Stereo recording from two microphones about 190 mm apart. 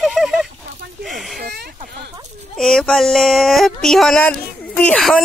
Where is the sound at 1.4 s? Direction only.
55° right (ahead or behind).